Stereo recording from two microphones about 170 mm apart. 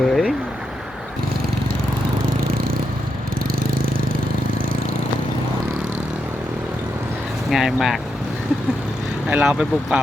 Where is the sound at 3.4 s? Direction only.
60° right (ahead or behind).